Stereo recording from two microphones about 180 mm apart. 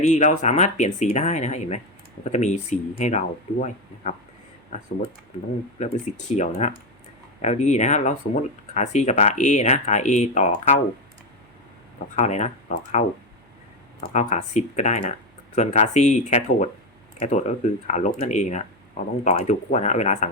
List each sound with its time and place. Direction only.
0.0 s speech: 40° left (ahead or behind)
12.1 s speech: 40° left (ahead or behind)
14.1 s speech: 40° left (ahead or behind)